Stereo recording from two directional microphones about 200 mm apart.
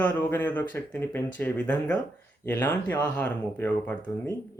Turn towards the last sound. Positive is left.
turn(degrees=10)  # may be behind; listen again after turning